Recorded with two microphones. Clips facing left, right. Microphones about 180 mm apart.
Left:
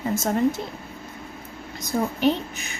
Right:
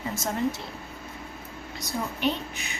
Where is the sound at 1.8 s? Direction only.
45° left (ahead or behind).